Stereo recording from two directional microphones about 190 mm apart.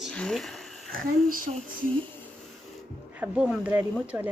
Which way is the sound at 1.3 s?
45° right (ahead or behind).